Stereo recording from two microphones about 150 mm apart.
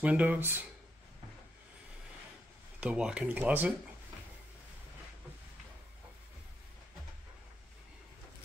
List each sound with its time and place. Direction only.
0.0 s speech: 10° right (ahead or behind)
2.8 s speech: 5° right (ahead or behind)